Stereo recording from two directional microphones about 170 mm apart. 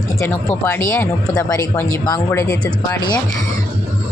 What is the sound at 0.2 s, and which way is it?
Speech, 15° left (ahead or behind).